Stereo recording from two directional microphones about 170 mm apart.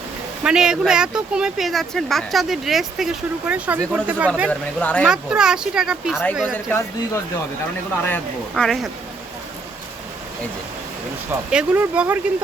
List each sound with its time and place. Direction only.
0.4 s speech: 5° right (ahead or behind)
4.4 s speech: 10° left (ahead or behind)
5.0 s speech: 5° right (ahead or behind)
6.7 s speech: 15° left (ahead or behind)
11.3 s speech: 10° right (ahead or behind)